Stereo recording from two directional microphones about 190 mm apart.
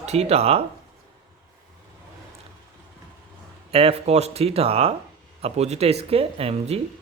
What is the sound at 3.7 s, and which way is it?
Speech, 30° right (ahead or behind).